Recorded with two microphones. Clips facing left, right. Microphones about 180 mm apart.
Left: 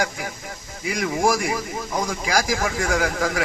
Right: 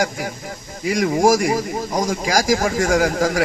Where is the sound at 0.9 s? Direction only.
45° right (ahead or behind).